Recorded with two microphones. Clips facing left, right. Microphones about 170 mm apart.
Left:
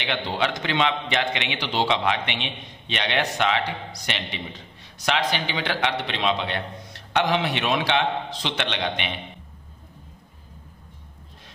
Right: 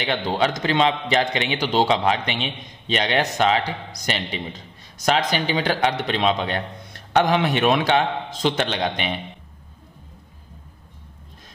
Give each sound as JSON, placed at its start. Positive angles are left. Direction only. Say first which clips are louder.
{"t": 0.0, "sound": "a man's voice", "louder": "right 4 dB", "side_deg": -40}